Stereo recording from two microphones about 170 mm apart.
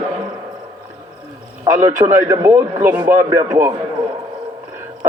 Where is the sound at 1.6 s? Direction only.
20° right (ahead or behind).